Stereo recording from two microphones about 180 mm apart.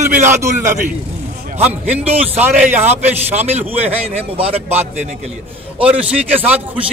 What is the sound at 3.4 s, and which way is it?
A man's voice, 35° right (ahead or behind).